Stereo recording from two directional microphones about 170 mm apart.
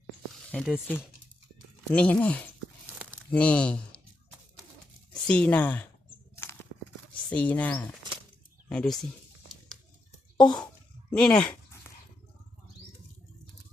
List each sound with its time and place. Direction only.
0.5 s speech: centre (ahead or behind)
5.3 s speech: 5° left (ahead or behind)
6.3 s a sound: 15° left (ahead or behind)
7.3 s speech: 10° left (ahead or behind)
10.4 s speech: 25° left (ahead or behind)
11.1 s dog: 5° left (ahead or behind)